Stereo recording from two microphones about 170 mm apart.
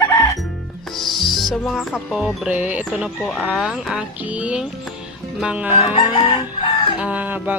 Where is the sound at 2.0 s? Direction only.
5° right (ahead or behind).